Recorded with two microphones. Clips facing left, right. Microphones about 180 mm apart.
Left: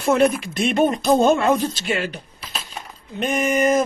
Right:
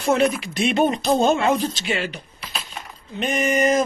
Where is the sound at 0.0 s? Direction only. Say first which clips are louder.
Left 2 dB; 55° left (ahead or behind).